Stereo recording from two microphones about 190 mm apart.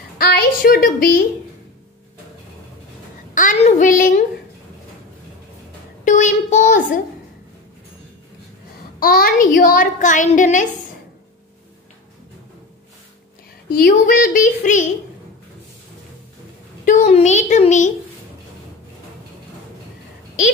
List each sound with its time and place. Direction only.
0.2 s a woman's voice: 50° left (ahead or behind)
3.3 s child singing: 40° left (ahead or behind)
6.0 s a sound: 40° left (ahead or behind)
9.0 s a woman's voice: 50° left (ahead or behind)
13.8 s a woman's voice: 45° left (ahead or behind)
16.8 s a woman's voice: 40° left (ahead or behind)